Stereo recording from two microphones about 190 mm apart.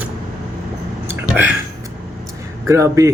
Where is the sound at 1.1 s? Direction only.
10° right (ahead or behind).